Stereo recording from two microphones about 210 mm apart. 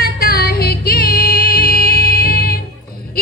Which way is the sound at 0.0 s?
45° left (ahead or behind).